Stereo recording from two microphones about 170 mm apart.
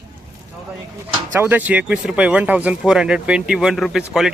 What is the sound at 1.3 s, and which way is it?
Speech, 10° right (ahead or behind).